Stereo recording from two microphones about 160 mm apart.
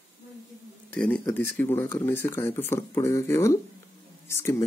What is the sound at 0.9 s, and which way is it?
Speech, 10° left (ahead or behind).